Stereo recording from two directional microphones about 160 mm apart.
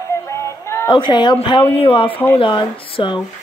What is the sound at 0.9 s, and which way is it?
Speech, 30° left (ahead or behind).